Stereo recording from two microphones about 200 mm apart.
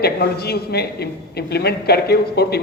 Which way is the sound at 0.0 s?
50° left (ahead or behind).